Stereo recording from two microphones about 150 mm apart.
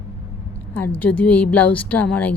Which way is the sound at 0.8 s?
10° left (ahead or behind).